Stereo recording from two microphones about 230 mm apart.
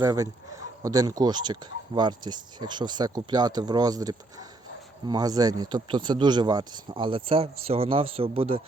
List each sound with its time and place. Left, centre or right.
0.0 s speech: centre